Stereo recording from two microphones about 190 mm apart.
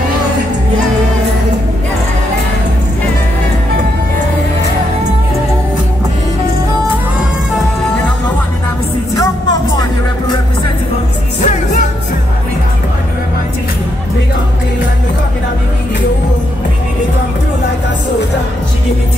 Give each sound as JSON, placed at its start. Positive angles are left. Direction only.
{"t": 9.1, "sound": "music", "side_deg": 20}
{"t": 11.4, "sound": "music", "side_deg": 40}